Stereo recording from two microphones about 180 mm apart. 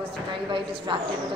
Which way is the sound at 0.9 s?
30° right (ahead or behind).